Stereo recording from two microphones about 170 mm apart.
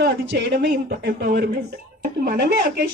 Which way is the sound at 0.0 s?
75° right (ahead or behind).